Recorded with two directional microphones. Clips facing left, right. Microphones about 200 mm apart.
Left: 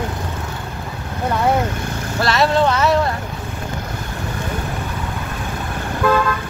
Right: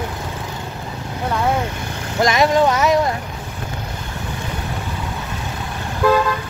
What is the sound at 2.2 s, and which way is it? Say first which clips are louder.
Speech: right 2 dB; 15° right (ahead or behind).